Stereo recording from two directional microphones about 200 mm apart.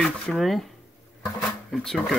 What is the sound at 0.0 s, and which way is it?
Speech, centre (ahead or behind).